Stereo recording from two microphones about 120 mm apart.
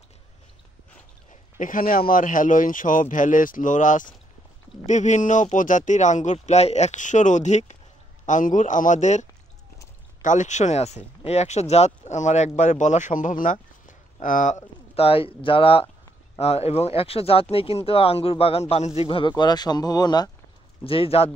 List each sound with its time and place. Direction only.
1.6 s speech: 90° left; by 7.7 s 75° left (ahead or behind)
8.3 s speech: 90° left
15.0 s speech: 50° left (ahead or behind); by 20.2 s 35° left (ahead or behind)
20.8 s speech: 50° left (ahead or behind)